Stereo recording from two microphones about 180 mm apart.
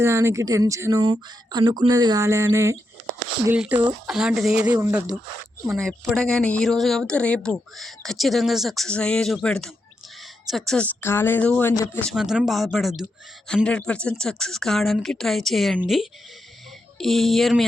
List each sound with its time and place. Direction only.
0.0 s speech: 15° right (ahead or behind)
5.7 s speech: centre (ahead or behind)